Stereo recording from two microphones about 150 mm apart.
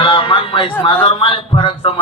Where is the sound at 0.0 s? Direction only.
35° left (ahead or behind).